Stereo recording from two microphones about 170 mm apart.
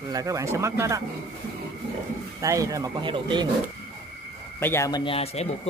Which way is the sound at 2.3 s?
20° right (ahead or behind).